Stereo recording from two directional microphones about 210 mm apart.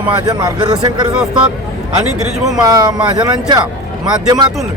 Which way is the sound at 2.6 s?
15° right (ahead or behind).